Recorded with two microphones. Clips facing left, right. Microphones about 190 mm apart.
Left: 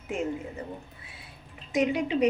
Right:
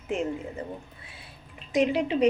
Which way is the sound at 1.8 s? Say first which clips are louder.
Right 2 dB; 30° right (ahead or behind).